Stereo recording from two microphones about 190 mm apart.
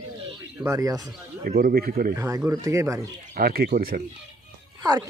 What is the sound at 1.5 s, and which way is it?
Speech, 50° right (ahead or behind).